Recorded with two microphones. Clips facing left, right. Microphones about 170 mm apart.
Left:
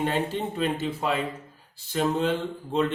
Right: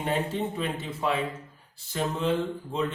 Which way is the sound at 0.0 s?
75° left (ahead or behind).